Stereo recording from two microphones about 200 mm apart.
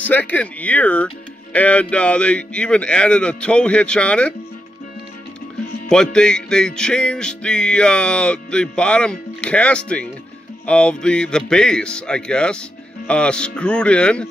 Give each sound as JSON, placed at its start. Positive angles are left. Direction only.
{"t": 0.0, "sound": "speech", "side_deg": 10}
{"t": 5.9, "sound": "speech", "side_deg": 5}